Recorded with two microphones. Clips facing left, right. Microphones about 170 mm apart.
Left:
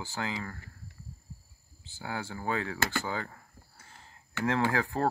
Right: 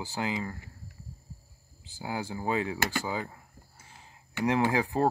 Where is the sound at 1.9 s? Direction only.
15° right (ahead or behind).